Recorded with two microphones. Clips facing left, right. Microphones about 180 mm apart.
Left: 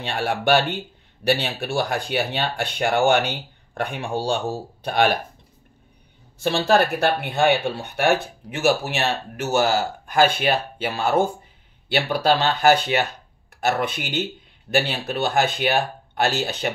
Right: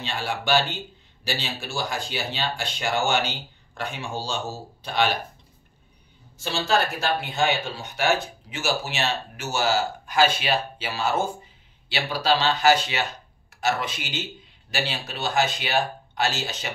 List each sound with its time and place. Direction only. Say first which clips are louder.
0.0 s speech: left 6 dB; 55° left (ahead or behind)
6.3 s speech: left 5 dB; 60° left (ahead or behind)